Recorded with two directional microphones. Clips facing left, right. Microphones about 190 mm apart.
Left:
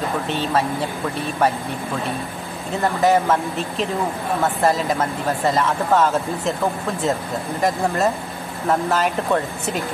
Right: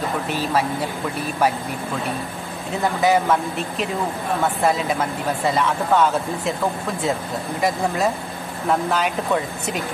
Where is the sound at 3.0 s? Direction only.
Centre (ahead or behind).